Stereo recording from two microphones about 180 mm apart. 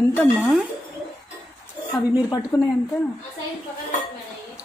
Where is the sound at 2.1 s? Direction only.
20° left (ahead or behind).